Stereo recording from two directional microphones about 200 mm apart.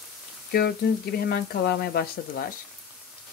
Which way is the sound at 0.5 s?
50° left (ahead or behind).